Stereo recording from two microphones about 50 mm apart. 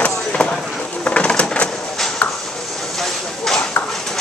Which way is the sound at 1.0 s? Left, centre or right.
Left.